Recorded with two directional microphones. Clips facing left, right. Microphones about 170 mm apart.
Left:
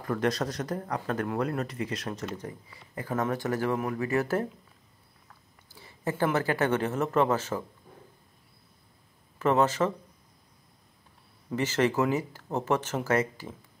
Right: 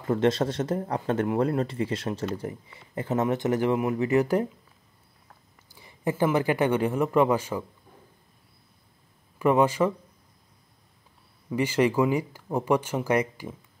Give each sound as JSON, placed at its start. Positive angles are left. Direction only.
{"t": 0.0, "sound": "speech", "side_deg": -25}
{"t": 5.7, "sound": "speech", "side_deg": -15}
{"t": 9.4, "sound": "speech", "side_deg": -10}
{"t": 11.5, "sound": "speech", "side_deg": -10}